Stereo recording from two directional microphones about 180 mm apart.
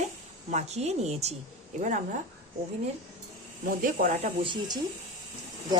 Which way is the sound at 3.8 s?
45° right (ahead or behind).